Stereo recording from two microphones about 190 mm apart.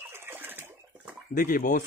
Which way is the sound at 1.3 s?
45° left (ahead or behind).